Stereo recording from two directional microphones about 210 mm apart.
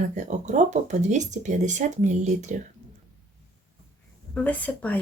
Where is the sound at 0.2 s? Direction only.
35° right (ahead or behind).